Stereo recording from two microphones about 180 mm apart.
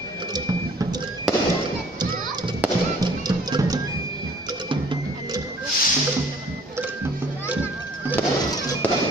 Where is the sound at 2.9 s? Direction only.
20° right (ahead or behind).